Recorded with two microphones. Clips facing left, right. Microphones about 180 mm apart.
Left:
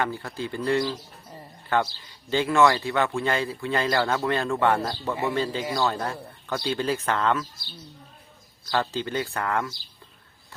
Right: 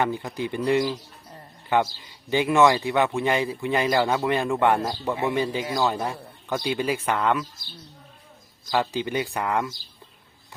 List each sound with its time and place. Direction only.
0.0 s speech: 20° right (ahead or behind)
8.7 s speech: 15° right (ahead or behind)